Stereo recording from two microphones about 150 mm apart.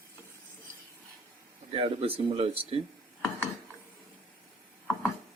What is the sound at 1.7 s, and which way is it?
Speech, 40° right (ahead or behind).